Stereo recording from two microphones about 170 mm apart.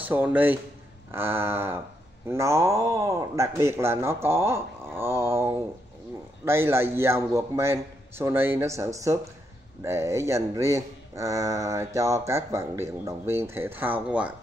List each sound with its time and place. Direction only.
0.0 s speech: 10° right (ahead or behind)
4.9 s a sound: 15° right (ahead or behind)
6.4 s speech: 15° right (ahead or behind)